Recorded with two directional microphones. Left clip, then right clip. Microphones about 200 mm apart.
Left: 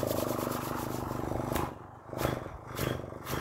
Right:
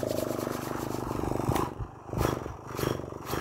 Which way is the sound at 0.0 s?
5° left (ahead or behind).